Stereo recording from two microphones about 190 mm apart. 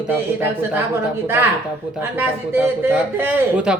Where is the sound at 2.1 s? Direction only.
10° right (ahead or behind).